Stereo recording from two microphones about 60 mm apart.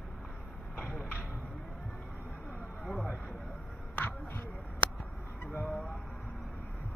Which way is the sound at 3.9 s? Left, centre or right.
Left.